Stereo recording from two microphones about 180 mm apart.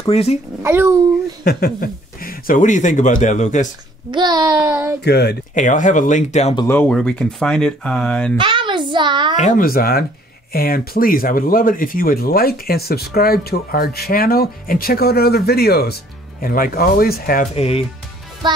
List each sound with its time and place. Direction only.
0.0 s a child's voice: 35° left (ahead or behind)
0.6 s a child's voice: 15° right (ahead or behind)
1.4 s speech: 60° left (ahead or behind); by 3.6 s 40° left (ahead or behind)
4.1 s speech: 25° right (ahead or behind)
5.0 s speech: 65° left (ahead or behind)
5.5 s speech: 45° left (ahead or behind)
6.7 s speech: 5° left (ahead or behind)
8.4 s a child's voice: 25° right (ahead or behind)
9.4 s speech: 50° left (ahead or behind)
17.6 s a child's voice: 35° left (ahead or behind)
18.4 s music: 25° right (ahead or behind)